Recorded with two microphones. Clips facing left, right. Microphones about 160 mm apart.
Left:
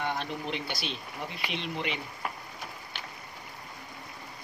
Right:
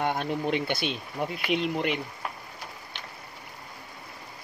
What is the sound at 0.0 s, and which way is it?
Speech, 50° right (ahead or behind).